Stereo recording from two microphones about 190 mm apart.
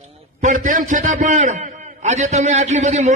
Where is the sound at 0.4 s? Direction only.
45° right (ahead or behind).